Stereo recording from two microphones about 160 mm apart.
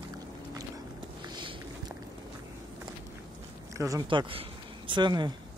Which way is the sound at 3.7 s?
20° right (ahead or behind).